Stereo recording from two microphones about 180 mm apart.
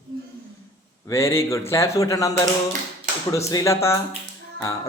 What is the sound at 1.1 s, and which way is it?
Speech, 15° left (ahead or behind).